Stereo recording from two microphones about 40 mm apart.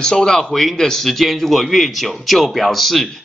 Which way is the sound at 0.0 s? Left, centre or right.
Centre.